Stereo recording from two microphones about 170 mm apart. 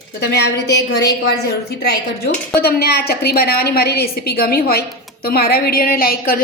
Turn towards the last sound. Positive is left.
turn(degrees=60)  # may be behind; listen again after turning